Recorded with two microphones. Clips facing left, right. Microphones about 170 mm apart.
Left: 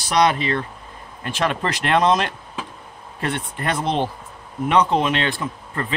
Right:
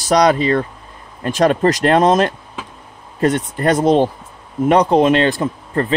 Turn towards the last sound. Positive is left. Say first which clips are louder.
# right 9 dB
turn(degrees=-40)  # may be behind; listen again after turning